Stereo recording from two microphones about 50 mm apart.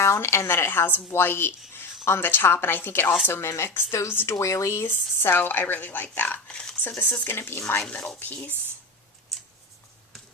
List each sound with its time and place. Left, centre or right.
0.0 s speech: left
4.4 s speech: left
4.8 s a woman's voice: left
6.5 s speech: centre
7.1 s speech: left
7.9 s a woman's voice: left